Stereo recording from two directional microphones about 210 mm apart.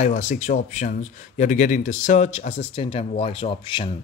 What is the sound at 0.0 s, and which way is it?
Speech, 35° left (ahead or behind).